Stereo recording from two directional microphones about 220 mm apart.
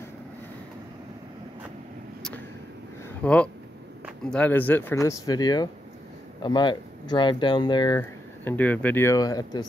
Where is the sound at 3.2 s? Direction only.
5° left (ahead or behind).